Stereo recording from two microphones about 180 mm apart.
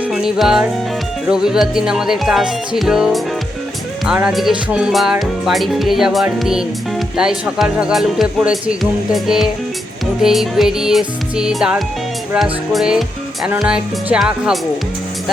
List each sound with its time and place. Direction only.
0.1 s music: centre (ahead or behind)
1.3 s speech: 5° right (ahead or behind)